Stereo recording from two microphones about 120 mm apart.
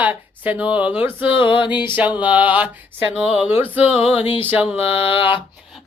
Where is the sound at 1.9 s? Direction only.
15° right (ahead or behind).